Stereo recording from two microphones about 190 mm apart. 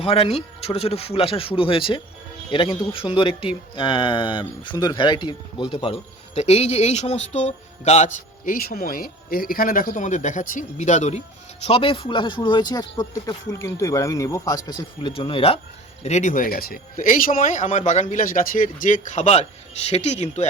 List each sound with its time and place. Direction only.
0.0 s speech: 30° left (ahead or behind)